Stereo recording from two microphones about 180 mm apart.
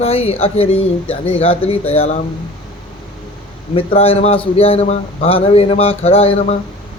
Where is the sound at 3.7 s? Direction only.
35° left (ahead or behind).